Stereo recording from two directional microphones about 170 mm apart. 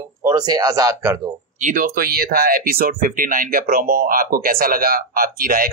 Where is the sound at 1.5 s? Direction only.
50° right (ahead or behind).